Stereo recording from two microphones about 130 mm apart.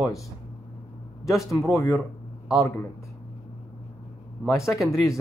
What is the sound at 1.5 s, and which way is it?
Speech, 25° left (ahead or behind).